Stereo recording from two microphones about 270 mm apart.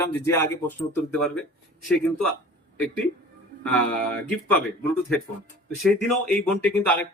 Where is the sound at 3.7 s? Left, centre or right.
Centre.